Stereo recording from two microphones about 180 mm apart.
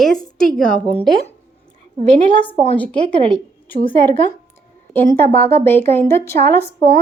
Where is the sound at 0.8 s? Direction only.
25° right (ahead or behind).